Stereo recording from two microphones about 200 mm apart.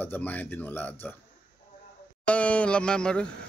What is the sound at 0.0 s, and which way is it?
A man's voice, 10° left (ahead or behind).